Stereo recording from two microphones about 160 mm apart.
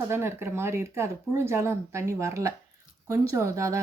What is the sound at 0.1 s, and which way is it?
Speech, 15° right (ahead or behind).